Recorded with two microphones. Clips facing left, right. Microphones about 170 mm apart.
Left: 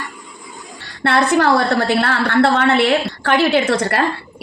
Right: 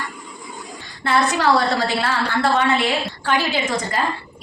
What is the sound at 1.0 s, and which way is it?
A woman's voice, 60° left (ahead or behind).